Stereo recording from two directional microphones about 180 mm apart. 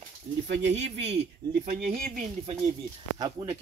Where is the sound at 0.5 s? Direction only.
85° right.